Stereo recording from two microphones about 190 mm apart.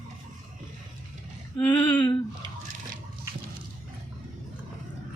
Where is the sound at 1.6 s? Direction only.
10° left (ahead or behind).